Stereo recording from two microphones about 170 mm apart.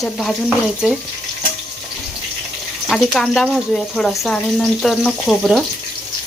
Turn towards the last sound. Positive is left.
turn(degrees=0)  # may be behind; listen again after turning